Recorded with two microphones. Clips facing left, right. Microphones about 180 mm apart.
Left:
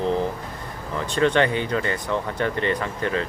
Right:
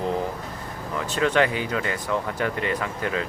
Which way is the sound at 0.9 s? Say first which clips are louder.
Left 2 dB; 5° right (ahead or behind).